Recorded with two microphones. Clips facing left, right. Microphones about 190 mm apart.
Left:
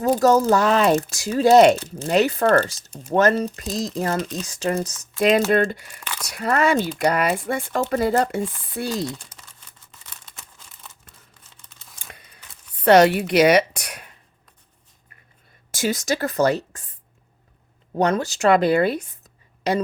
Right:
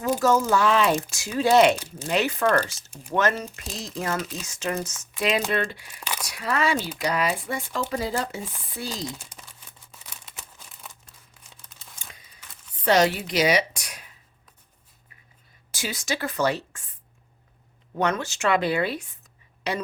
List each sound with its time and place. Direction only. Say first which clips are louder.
0.0 s speech: left 5 dB; 40° left (ahead or behind); by 9.0 s 60° left (ahead or behind)
9.1 s crumpling: left 1 dB; 5° right (ahead or behind)
12.1 s a sound: left 4 dB; 60° left (ahead or behind)
12.8 s speech: left 7 dB; 60° left (ahead or behind)
15.7 s speech: left 7 dB; 45° left (ahead or behind)
17.9 s speech: left 5 dB; 35° left (ahead or behind)